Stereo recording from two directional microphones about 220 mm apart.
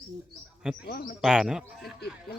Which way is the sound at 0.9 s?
45° left (ahead or behind).